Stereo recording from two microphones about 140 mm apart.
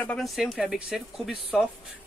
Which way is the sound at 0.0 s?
10° left (ahead or behind).